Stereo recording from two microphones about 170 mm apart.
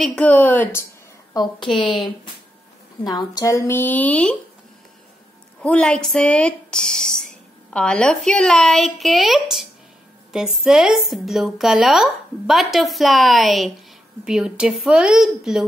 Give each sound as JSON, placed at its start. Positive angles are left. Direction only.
{"t": 0.0, "sound": "speech", "side_deg": 5}
{"t": 1.3, "sound": "a woman's voice", "side_deg": 25}
{"t": 3.0, "sound": "speech", "side_deg": 25}
{"t": 5.6, "sound": "speech", "side_deg": 5}